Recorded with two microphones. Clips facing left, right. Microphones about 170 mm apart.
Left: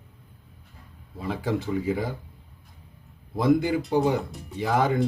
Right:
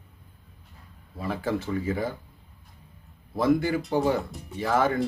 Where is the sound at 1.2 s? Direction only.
15° left (ahead or behind).